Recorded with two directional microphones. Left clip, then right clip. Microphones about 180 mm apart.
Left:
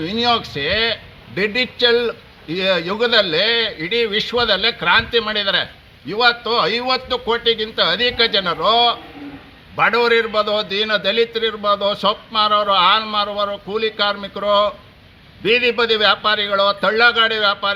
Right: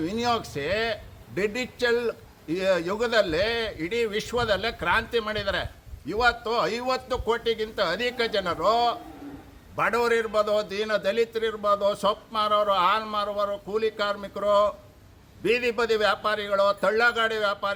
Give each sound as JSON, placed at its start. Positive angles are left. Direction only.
{"t": 0.0, "sound": "a man's voice", "side_deg": -20}